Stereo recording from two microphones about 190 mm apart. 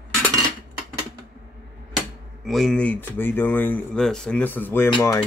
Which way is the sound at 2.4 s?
Centre (ahead or behind).